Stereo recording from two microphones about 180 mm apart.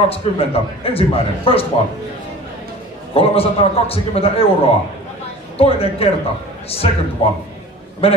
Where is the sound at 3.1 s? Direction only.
35° left (ahead or behind).